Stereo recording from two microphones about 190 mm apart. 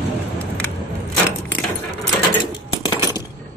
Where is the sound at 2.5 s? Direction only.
25° left (ahead or behind).